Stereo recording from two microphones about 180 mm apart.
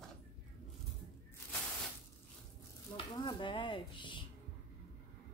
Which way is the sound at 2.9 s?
25° left (ahead or behind).